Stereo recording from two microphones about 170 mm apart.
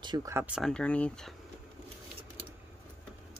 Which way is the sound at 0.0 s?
20° right (ahead or behind).